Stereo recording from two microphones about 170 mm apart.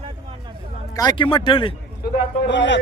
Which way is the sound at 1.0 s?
25° left (ahead or behind).